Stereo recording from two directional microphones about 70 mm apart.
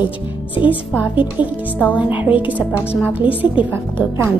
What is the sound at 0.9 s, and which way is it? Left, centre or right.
Speech, right.